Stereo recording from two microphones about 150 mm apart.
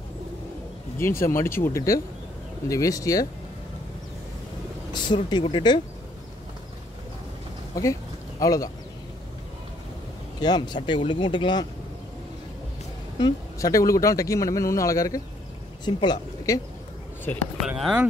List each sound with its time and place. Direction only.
0.9 s speech: 15° left (ahead or behind)
4.9 s speech: 30° left (ahead or behind)
7.7 s a sound: 20° left (ahead or behind)
10.4 s speech: 30° left (ahead or behind)
13.2 s speech: 20° left (ahead or behind)
17.6 s speech: 5° right (ahead or behind)